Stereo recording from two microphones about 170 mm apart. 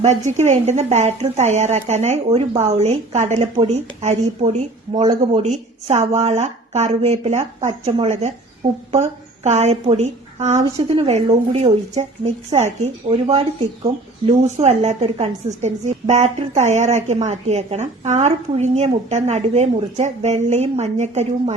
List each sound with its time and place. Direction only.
0.0 s a woman's voice: 45° right (ahead or behind)